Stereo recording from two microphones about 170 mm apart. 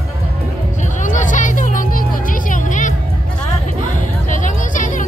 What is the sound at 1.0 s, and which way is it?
Music, 50° left (ahead or behind).